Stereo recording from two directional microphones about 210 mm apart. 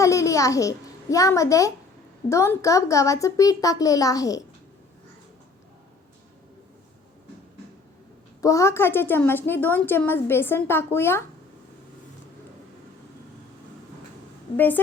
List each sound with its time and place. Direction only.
0.0 s a child's voice: 15° left (ahead or behind)
8.4 s a woman's voice: 15° left (ahead or behind)
14.5 s a woman's voice: 10° left (ahead or behind)